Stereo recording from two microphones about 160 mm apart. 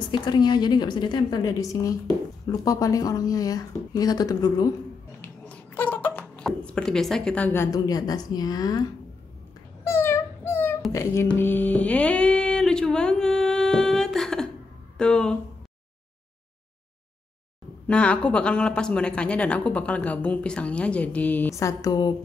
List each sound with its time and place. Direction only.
0.1 s a woman's voice: 25° left (ahead or behind)
5.5 s speech: 10° left (ahead or behind)
9.8 s a sound: 15° left (ahead or behind)
10.9 s music: 15° left (ahead or behind)
15.0 s speech: 5° left (ahead or behind)
17.8 s speech: 5° left (ahead or behind); by 22.1 s 25° left (ahead or behind)